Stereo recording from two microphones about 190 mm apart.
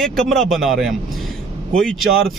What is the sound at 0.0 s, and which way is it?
Speech, centre (ahead or behind).